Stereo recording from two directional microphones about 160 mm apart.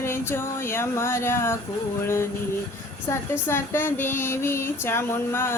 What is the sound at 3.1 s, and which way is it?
Child singing, 15° left (ahead or behind).